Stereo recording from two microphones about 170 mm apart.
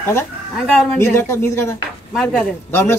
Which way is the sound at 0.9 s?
15° left (ahead or behind).